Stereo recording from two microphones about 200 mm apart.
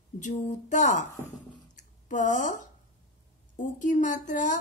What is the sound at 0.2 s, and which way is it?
Speech, 40° left (ahead or behind).